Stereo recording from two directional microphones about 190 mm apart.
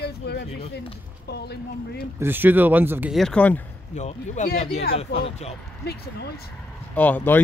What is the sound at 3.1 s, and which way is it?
Speech, 5° left (ahead or behind).